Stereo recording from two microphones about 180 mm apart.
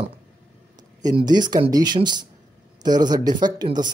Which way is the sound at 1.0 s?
25° right (ahead or behind).